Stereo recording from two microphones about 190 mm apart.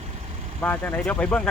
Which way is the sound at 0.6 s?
10° left (ahead or behind).